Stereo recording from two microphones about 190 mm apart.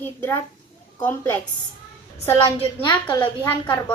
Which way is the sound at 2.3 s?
20° left (ahead or behind).